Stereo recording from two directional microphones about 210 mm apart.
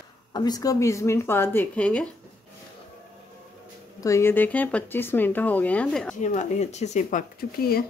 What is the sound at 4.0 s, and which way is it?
Speech, 15° left (ahead or behind).